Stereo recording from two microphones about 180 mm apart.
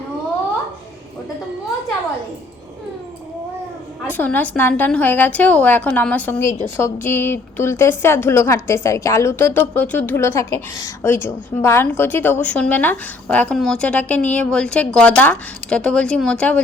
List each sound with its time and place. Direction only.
4.1 s a woman's voice: 10° left (ahead or behind)